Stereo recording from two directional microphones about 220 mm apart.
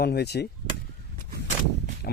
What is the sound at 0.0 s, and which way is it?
Speech, 45° left (ahead or behind).